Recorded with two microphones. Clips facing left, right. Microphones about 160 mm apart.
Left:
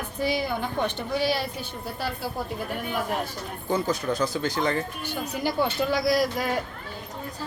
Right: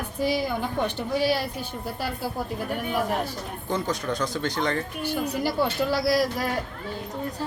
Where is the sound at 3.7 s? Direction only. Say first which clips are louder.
Left 2 dB; 5° left (ahead or behind).